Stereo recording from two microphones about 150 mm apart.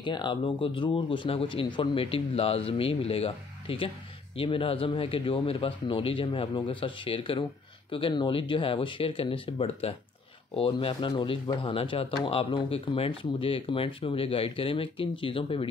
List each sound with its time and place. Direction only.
0.0 s speech: 30° left (ahead or behind)